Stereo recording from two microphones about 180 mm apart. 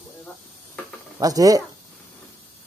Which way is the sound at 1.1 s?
20° right (ahead or behind).